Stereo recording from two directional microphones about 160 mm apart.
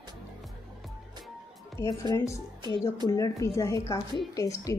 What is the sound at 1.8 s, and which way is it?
A woman's voice, 20° left (ahead or behind).